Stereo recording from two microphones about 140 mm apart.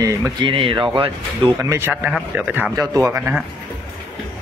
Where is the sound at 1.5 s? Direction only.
20° right (ahead or behind).